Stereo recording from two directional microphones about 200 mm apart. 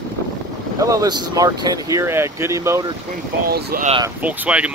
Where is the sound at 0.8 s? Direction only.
15° right (ahead or behind).